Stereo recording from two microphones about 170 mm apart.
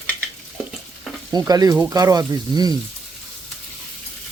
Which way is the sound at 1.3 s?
20° right (ahead or behind).